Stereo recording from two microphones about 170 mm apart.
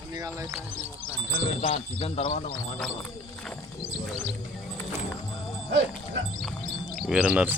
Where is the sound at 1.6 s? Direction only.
50° left (ahead or behind).